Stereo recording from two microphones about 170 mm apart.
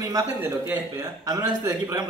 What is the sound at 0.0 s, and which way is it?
A man's voice, 15° right (ahead or behind).